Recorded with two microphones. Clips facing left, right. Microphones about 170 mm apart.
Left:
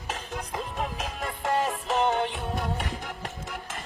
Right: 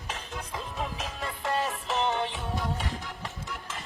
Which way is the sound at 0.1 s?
45° left (ahead or behind).